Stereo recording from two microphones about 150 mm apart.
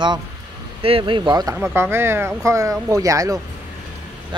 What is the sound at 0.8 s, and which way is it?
Speech, 35° right (ahead or behind).